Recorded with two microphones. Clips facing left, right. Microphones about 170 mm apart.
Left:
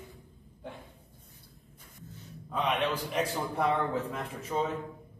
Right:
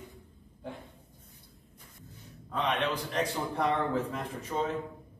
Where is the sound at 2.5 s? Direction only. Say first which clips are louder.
Left 1 dB; 5° left (ahead or behind).